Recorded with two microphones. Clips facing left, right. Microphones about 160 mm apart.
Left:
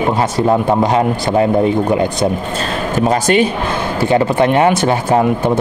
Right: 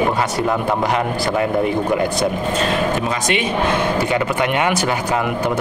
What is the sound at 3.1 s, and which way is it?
Speech, 40° left (ahead or behind).